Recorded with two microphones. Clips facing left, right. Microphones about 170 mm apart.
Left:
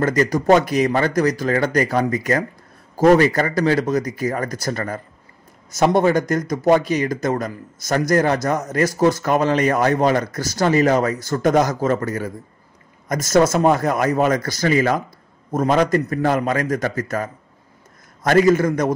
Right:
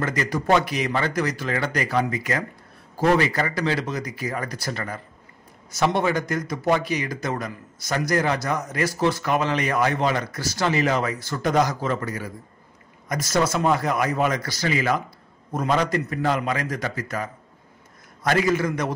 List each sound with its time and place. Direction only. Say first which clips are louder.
0.0 s speech: left 7 dB; 40° left (ahead or behind)